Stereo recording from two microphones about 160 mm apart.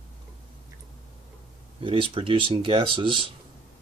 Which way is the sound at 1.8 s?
35° right (ahead or behind).